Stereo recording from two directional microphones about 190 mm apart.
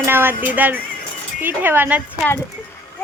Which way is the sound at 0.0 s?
10° right (ahead or behind).